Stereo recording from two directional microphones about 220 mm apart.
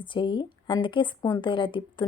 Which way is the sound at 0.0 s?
20° left (ahead or behind).